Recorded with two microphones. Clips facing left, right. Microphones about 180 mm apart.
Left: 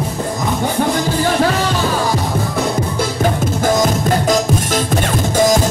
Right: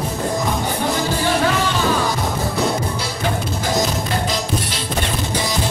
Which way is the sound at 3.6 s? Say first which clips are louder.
Left 6 dB; 50° left (ahead or behind).